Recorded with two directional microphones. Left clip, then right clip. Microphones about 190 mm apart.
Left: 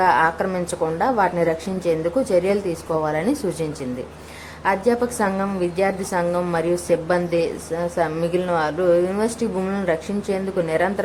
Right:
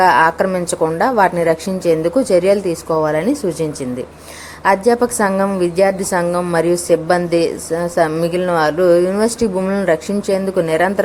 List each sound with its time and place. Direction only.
0.0 s a woman's voice: 25° right (ahead or behind)